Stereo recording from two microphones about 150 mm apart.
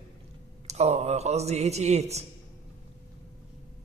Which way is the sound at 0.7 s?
45° right (ahead or behind).